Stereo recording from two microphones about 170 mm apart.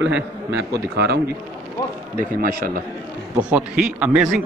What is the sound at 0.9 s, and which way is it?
Speech, 75° right (ahead or behind).